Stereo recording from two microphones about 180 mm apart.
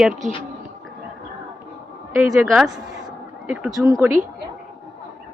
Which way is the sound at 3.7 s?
20° right (ahead or behind).